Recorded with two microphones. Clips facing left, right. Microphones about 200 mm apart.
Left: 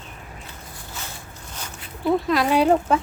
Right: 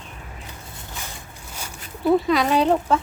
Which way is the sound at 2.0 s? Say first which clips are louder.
Right 2 dB; centre (ahead or behind).